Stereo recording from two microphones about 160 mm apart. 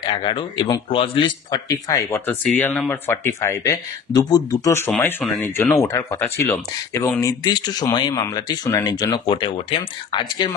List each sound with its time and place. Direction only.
0.0 s speech: 30° left (ahead or behind)
2.4 s speech: 5° left (ahead or behind); by 10.5 s 30° left (ahead or behind)